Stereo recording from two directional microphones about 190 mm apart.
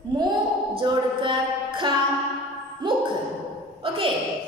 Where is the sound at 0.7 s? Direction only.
25° right (ahead or behind).